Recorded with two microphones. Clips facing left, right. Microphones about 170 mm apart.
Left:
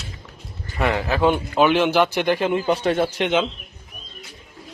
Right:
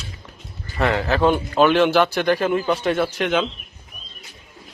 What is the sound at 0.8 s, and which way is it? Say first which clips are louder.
Speech: right 1 dB; 15° left (ahead or behind).